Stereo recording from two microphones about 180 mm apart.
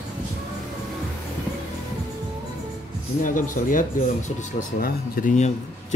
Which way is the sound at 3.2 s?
50° left (ahead or behind).